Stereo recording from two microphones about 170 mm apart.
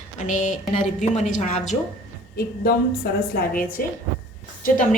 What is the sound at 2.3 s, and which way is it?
A woman's voice, 65° left (ahead or behind).